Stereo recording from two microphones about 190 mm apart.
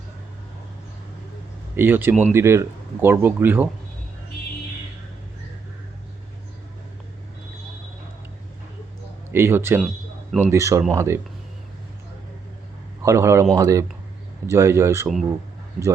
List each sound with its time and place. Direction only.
1.7 s speech: 10° right (ahead or behind)
9.3 s speech: 15° right (ahead or behind)
13.0 s speech: 15° right (ahead or behind)